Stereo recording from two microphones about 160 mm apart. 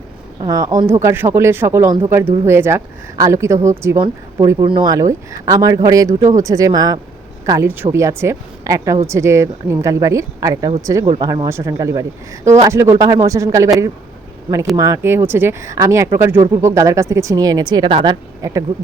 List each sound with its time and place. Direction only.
0.4 s a woman's voice: 20° right (ahead or behind)
14.8 s a woman's voice: 20° right (ahead or behind)